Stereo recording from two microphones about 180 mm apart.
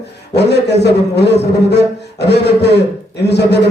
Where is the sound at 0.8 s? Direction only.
70° left (ahead or behind).